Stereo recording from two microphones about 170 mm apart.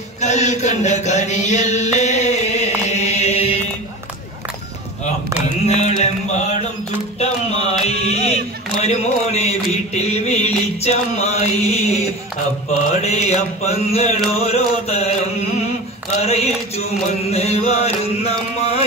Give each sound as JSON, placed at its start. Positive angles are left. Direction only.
{"t": 0.2, "sound": "mantra", "side_deg": 45}
{"t": 5.7, "sound": "mantra", "side_deg": 40}
{"t": 7.2, "sound": "a sound", "side_deg": 40}
{"t": 13.0, "sound": "mantra", "side_deg": 40}
{"t": 16.2, "sound": "a sound", "side_deg": 40}
{"t": 17.3, "sound": "chant", "side_deg": 40}